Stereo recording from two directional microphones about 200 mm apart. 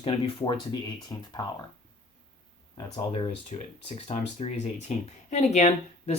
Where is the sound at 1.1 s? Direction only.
15° left (ahead or behind).